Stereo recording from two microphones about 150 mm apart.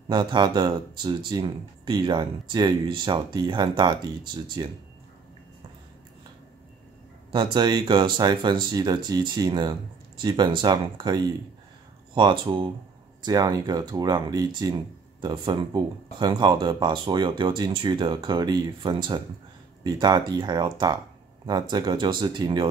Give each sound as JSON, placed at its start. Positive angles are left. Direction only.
{"t": 0.1, "sound": "speech", "side_deg": -30}
{"t": 7.5, "sound": "speech", "side_deg": -30}